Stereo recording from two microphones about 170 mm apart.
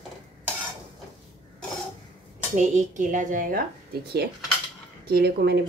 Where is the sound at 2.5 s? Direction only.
45° right (ahead or behind).